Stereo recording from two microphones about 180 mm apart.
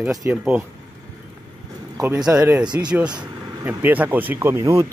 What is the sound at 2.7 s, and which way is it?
Speech, 15° right (ahead or behind).